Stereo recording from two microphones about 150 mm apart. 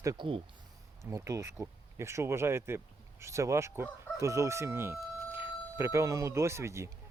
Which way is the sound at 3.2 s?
20° right (ahead or behind).